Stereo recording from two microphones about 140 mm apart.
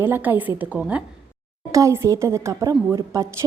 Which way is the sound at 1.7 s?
20° right (ahead or behind).